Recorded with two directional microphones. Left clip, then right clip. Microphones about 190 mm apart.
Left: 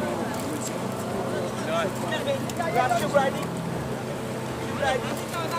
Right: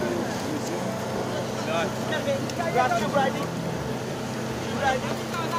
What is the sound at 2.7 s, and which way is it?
Speech, 50° left (ahead or behind).